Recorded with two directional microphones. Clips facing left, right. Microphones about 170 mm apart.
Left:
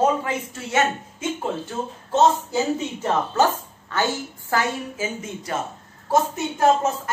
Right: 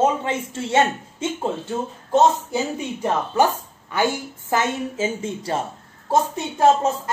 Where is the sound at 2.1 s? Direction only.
15° right (ahead or behind).